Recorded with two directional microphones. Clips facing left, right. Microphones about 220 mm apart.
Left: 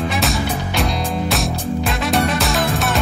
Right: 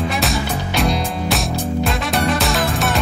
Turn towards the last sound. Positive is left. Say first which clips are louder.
# even
turn(degrees=0)  # may be behind; listen again after turning